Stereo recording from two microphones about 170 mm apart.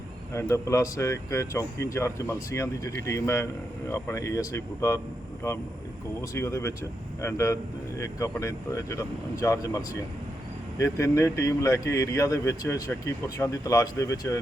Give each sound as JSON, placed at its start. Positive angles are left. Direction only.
{"t": 0.3, "sound": "speech", "side_deg": 15}